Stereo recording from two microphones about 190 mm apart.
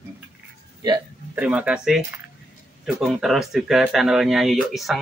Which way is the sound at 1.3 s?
5° right (ahead or behind).